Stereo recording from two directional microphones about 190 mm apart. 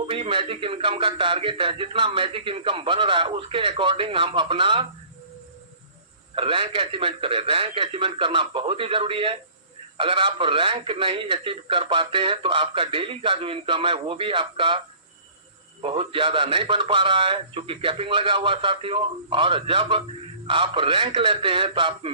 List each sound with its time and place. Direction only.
0.1 s speech: 30° right (ahead or behind)
6.3 s speech: 30° right (ahead or behind)
15.8 s speech: 30° right (ahead or behind)